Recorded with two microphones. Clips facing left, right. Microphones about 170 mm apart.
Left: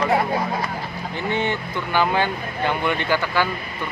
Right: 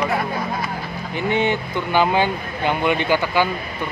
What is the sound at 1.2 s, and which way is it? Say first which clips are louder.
Speech: right 4 dB; 15° right (ahead or behind).